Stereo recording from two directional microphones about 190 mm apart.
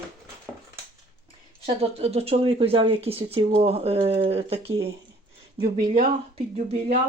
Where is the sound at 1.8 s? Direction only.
30° right (ahead or behind).